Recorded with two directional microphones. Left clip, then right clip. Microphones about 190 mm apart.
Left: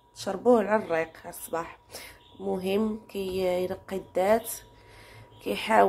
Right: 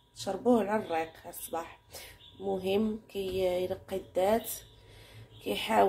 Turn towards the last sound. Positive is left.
turn(degrees=15)  # may be behind; listen again after turning